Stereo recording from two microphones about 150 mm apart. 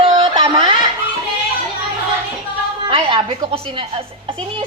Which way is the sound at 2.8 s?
35° right (ahead or behind).